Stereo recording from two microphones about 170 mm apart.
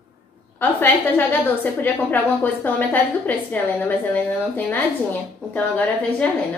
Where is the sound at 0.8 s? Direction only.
10° left (ahead or behind).